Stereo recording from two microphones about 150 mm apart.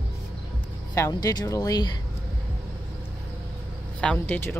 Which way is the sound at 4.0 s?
10° left (ahead or behind).